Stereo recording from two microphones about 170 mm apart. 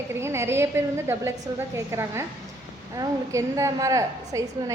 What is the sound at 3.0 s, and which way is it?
A woman's voice, 20° right (ahead or behind).